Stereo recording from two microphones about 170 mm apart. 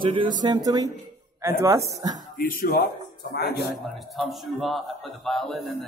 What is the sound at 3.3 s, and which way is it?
Speech, 75° left (ahead or behind).